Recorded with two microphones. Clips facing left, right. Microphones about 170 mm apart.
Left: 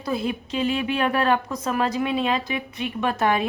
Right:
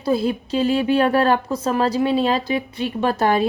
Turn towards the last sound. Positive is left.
turn(degrees=-35)  # may be behind; listen again after turning